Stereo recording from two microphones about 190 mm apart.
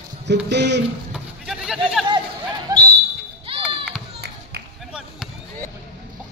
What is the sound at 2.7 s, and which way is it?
Basketball bounce, 20° right (ahead or behind).